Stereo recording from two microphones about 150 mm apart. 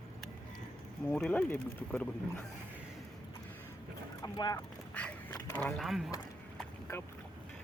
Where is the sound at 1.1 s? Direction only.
10° left (ahead or behind).